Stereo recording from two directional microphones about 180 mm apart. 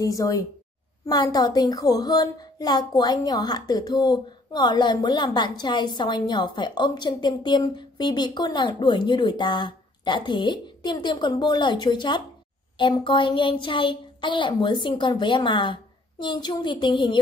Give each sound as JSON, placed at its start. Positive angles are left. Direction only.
{"t": 0.0, "sound": "a woman's voice", "side_deg": 20}